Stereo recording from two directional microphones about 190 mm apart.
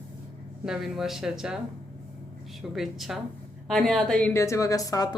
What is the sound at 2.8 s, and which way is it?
A woman's voice, centre (ahead or behind).